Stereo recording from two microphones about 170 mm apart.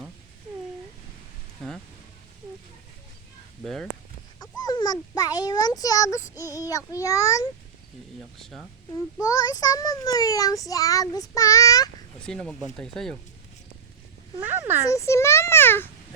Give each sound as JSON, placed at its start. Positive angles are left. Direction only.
{"t": 3.6, "sound": "speech", "side_deg": 0}
{"t": 4.4, "sound": "a sound", "side_deg": 25}
{"t": 6.5, "sound": "a child's voice", "side_deg": 20}
{"t": 8.4, "sound": "speech", "side_deg": 0}
{"t": 9.2, "sound": "a child's voice", "side_deg": 20}
{"t": 12.2, "sound": "speech", "side_deg": 5}
{"t": 14.4, "sound": "speech", "side_deg": -10}
{"t": 14.8, "sound": "a child's voice", "side_deg": 20}